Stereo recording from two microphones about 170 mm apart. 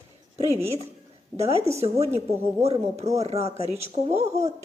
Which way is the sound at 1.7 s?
40° right (ahead or behind).